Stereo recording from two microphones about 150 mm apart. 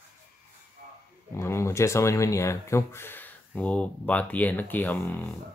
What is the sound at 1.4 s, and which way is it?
Speech, 20° left (ahead or behind).